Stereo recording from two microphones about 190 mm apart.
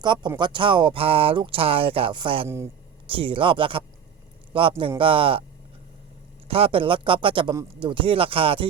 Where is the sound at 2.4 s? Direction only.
15° right (ahead or behind).